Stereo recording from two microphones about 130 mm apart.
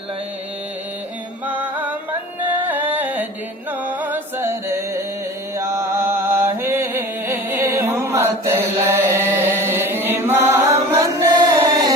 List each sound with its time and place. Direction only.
1.5 s music: 15° right (ahead or behind)
5.5 s chant: 20° right (ahead or behind)
11.5 s music: 25° right (ahead or behind)